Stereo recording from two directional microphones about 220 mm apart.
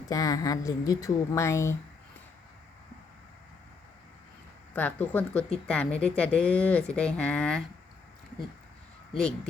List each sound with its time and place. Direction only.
0.1 s a woman's voice: 15° left (ahead or behind)
4.7 s a woman's voice: 10° left (ahead or behind)